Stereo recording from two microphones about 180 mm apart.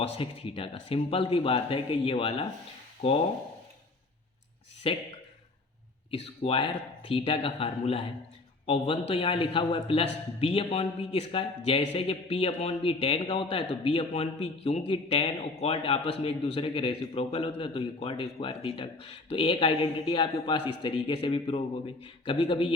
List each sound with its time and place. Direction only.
0.0 s a man's voice: 30° left (ahead or behind)
4.8 s speech: 30° left (ahead or behind)
6.1 s a man's voice: 35° left (ahead or behind)